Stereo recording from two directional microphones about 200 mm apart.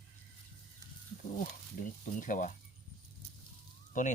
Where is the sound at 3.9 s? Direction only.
40° left (ahead or behind).